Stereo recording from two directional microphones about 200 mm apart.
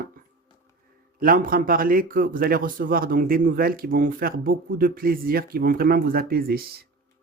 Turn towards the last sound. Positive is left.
turn(degrees=-50)  # may be behind; listen again after turning